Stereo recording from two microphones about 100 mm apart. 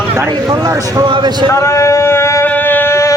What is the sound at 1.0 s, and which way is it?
Speech, 45° right (ahead or behind).